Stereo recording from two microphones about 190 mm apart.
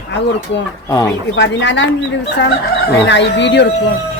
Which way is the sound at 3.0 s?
70° left (ahead or behind).